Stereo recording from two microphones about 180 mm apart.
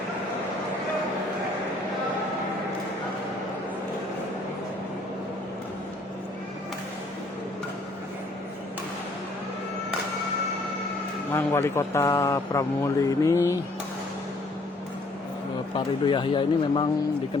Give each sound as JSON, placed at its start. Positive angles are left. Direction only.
{"t": 11.3, "sound": "a man's voice", "side_deg": 15}
{"t": 15.7, "sound": "speech", "side_deg": 25}